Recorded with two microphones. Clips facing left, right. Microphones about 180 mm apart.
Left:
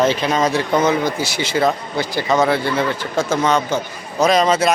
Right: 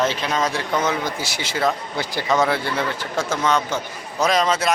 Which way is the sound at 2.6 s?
5° right (ahead or behind).